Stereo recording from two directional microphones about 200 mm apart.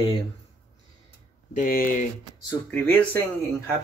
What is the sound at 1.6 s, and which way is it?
Speech, 45° left (ahead or behind).